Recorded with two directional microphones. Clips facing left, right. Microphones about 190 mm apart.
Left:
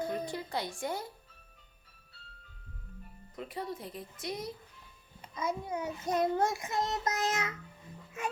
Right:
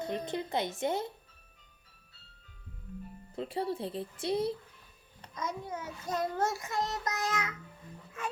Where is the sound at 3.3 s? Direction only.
30° right (ahead or behind).